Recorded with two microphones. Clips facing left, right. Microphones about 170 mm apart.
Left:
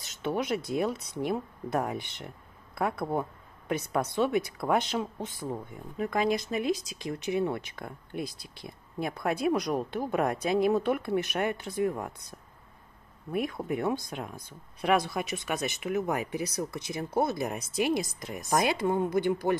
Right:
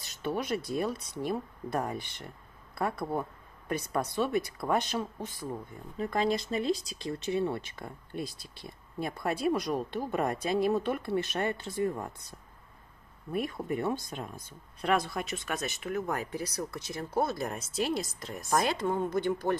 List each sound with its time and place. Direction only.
0.0 s speech: 20° left (ahead or behind)